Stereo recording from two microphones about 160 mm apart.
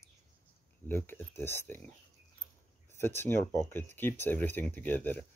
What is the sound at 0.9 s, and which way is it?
Speech, 15° left (ahead or behind).